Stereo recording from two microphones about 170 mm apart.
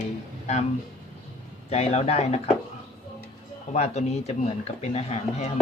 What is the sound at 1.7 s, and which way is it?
Speech, 35° left (ahead or behind).